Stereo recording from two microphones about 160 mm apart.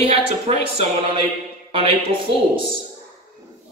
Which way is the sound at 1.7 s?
35° right (ahead or behind).